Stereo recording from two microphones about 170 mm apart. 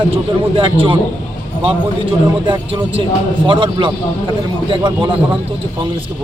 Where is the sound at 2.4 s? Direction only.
30° right (ahead or behind).